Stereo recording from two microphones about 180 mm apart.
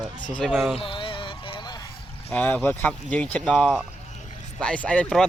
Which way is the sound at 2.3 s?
10° left (ahead or behind).